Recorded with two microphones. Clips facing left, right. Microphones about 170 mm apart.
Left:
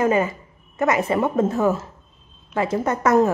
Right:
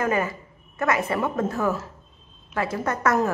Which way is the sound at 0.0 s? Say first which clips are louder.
Left 5 dB; 20° left (ahead or behind).